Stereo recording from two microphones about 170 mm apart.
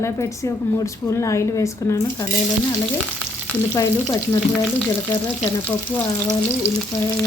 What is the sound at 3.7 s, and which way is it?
Speech, 20° left (ahead or behind).